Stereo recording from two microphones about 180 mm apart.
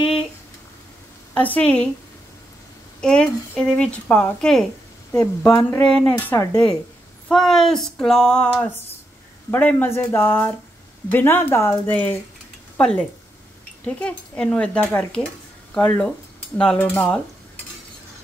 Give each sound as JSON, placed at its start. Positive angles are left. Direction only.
{"t": 1.3, "sound": "speech", "side_deg": 10}
{"t": 3.0, "sound": "speech", "side_deg": 5}
{"t": 5.8, "sound": "speech", "side_deg": -30}
{"t": 6.0, "sound": "speech", "side_deg": 10}
{"t": 7.2, "sound": "speech", "side_deg": 0}